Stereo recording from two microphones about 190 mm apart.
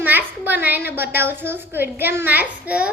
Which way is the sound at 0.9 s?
10° right (ahead or behind).